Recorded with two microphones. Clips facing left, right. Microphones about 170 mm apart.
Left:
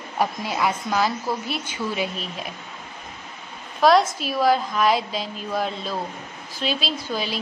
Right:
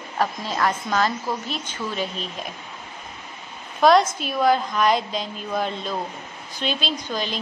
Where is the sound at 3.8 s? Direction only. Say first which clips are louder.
Right 1 dB; centre (ahead or behind).